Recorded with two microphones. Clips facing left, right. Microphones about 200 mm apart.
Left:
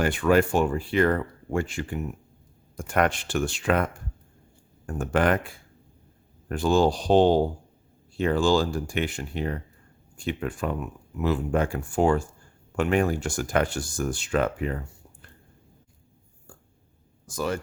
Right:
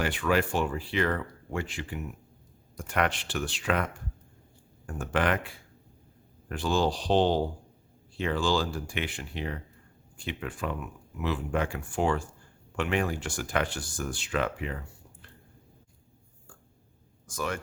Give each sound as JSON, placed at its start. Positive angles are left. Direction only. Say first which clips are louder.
{"t": 0.0, "sound": "speech", "louder": "left 6 dB", "side_deg": 45}
{"t": 6.5, "sound": "speech", "louder": "left 6 dB", "side_deg": 45}
{"t": 17.2, "sound": "speech", "louder": "left 5 dB", "side_deg": 35}